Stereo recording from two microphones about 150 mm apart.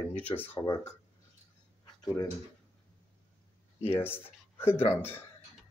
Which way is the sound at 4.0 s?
15° left (ahead or behind).